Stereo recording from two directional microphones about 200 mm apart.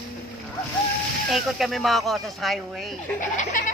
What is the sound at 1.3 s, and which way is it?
Speech, centre (ahead or behind).